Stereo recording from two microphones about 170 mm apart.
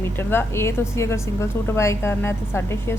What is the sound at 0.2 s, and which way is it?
A woman's voice, 15° left (ahead or behind).